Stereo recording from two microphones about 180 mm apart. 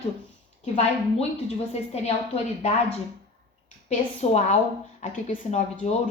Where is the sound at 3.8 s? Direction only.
40° left (ahead or behind).